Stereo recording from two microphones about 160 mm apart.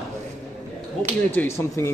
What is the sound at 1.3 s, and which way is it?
Speech, 15° left (ahead or behind).